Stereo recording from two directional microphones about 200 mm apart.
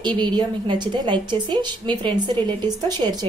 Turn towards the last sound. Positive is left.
turn(degrees=-20)  # may be behind; listen again after turning